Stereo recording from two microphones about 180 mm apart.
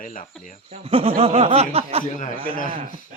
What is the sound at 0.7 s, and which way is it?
Speech, 30° right (ahead or behind).